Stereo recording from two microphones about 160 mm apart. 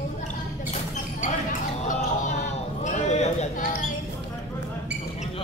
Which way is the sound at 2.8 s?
45° left (ahead or behind).